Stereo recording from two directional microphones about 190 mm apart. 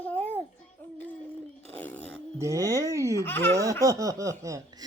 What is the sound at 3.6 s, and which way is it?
Baby laughter, 15° right (ahead or behind).